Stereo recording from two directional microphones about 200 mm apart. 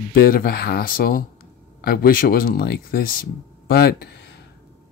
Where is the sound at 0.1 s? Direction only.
45° left (ahead or behind).